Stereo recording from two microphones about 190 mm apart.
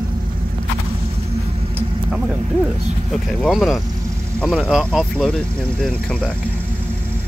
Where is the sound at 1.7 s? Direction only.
5° right (ahead or behind).